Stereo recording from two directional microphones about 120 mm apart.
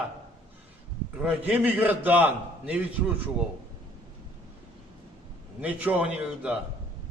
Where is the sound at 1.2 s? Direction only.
10° right (ahead or behind).